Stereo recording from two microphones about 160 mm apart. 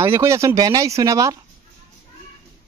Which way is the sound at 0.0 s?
15° right (ahead or behind).